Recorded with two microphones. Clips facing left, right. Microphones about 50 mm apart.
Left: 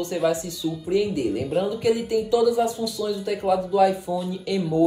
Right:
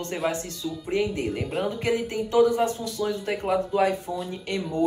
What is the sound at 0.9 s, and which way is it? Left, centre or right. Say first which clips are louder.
Speech: left 3 dB; right.